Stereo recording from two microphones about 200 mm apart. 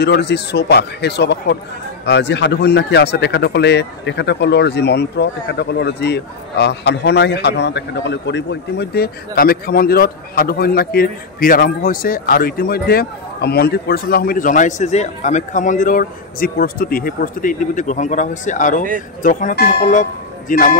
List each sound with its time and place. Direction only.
0.0 s a man's voice: 55° left (ahead or behind)